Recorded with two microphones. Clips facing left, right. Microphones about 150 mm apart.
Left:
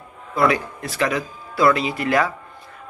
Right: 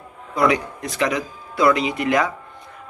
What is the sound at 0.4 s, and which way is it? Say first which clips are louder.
Speech: even; 20° right (ahead or behind).